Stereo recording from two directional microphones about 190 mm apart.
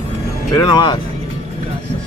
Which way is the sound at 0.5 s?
20° left (ahead or behind).